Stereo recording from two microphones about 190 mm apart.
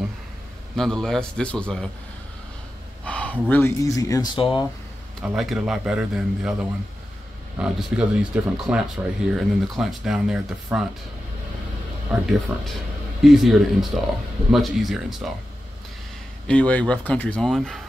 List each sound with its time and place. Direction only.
0.7 s speech: 5° left (ahead or behind)
3.1 s speech: 5° left (ahead or behind); by 4.6 s 25° left (ahead or behind)
5.2 s speech: 5° right (ahead or behind)
7.5 s speech: 5° right (ahead or behind)
12.1 s speech: centre (ahead or behind)
16.4 s speech: 5° left (ahead or behind)